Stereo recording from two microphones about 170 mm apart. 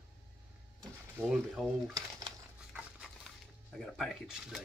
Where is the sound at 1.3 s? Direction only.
5° right (ahead or behind).